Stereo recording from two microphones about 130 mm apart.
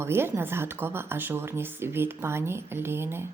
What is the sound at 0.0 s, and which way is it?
Speech, 20° right (ahead or behind).